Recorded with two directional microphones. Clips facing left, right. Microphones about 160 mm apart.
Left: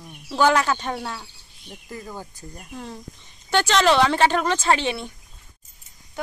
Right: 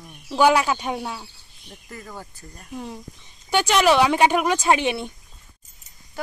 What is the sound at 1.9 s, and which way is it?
Speech, 15° left (ahead or behind).